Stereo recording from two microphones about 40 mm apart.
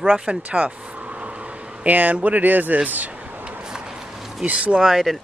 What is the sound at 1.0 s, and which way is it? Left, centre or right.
Vehicle, right.